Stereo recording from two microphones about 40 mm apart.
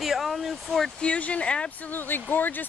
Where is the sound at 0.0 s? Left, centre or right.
Centre.